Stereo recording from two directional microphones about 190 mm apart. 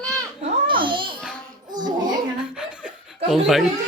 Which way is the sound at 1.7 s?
20° right (ahead or behind).